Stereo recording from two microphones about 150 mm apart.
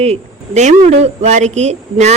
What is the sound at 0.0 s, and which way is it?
A woman's voice, 45° right (ahead or behind).